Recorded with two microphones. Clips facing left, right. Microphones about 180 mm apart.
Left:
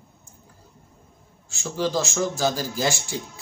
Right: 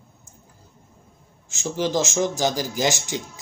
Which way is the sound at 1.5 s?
20° right (ahead or behind).